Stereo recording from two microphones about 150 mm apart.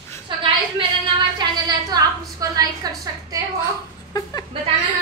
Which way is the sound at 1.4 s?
25° right (ahead or behind).